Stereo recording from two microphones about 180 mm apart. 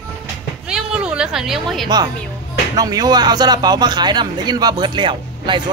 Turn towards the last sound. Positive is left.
turn(degrees=-25)  # may be behind; listen again after turning